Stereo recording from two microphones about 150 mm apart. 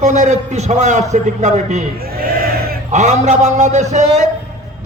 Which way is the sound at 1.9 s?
90° right.